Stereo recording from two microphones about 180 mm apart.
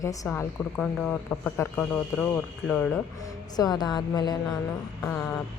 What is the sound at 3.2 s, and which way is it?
Speech, 20° left (ahead or behind).